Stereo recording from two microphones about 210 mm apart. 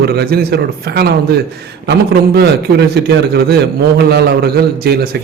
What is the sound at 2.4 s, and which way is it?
A man's voice, 50° right (ahead or behind).